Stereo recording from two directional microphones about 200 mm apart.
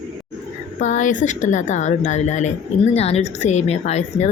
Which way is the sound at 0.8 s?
40° left (ahead or behind).